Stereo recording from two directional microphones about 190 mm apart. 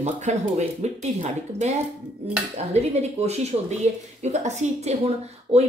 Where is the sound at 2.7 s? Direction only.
35° right (ahead or behind).